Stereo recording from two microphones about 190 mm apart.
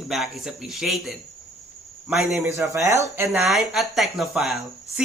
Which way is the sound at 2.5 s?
15° right (ahead or behind).